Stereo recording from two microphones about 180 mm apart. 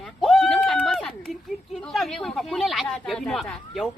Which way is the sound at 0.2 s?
Centre (ahead or behind).